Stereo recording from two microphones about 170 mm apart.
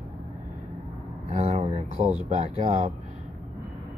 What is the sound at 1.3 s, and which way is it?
A man's voice, 40° right (ahead or behind).